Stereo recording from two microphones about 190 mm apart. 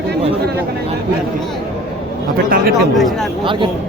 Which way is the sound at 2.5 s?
50° right (ahead or behind).